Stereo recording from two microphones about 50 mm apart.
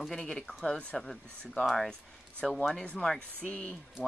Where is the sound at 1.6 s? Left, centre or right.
Centre.